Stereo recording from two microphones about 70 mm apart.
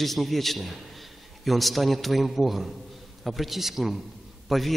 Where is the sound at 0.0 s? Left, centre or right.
Centre.